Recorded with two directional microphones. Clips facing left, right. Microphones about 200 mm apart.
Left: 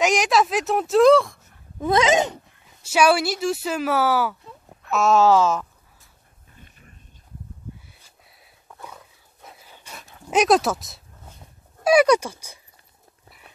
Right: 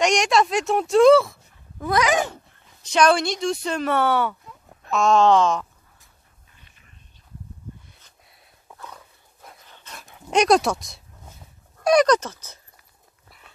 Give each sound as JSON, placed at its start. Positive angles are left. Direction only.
{"t": 0.0, "sound": "speech", "side_deg": 5}
{"t": 1.8, "sound": "speech", "side_deg": 25}
{"t": 2.8, "sound": "speech", "side_deg": 5}
{"t": 6.6, "sound": "a sound", "side_deg": 45}
{"t": 7.9, "sound": "a sound", "side_deg": 5}
{"t": 8.9, "sound": "dog", "side_deg": 5}
{"t": 10.1, "sound": "speech", "side_deg": 0}